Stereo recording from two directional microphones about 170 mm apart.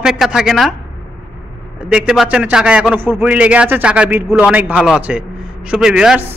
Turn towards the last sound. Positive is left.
turn(degrees=-5)  # may be behind; listen again after turning